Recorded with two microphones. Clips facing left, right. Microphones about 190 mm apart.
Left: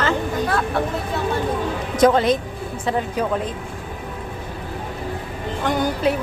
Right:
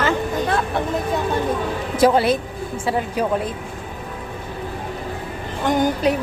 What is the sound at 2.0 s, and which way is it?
Speech, 10° right (ahead or behind).